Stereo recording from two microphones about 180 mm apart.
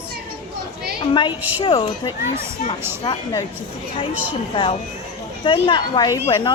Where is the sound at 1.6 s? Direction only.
30° left (ahead or behind).